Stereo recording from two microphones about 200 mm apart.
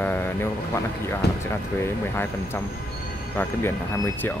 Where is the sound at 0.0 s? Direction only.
10° left (ahead or behind).